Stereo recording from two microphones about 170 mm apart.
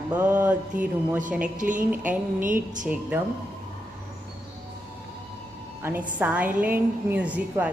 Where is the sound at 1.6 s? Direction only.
50° right (ahead or behind).